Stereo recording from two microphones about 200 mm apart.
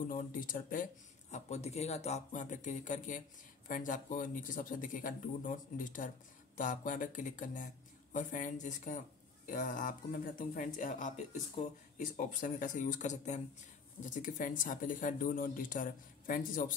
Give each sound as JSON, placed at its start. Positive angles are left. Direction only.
{"t": 0.1, "sound": "speech", "side_deg": 45}